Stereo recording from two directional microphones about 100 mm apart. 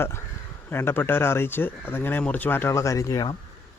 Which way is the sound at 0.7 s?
25° left (ahead or behind).